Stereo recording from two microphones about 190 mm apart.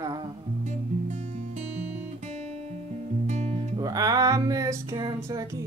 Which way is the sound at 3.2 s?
35° right (ahead or behind).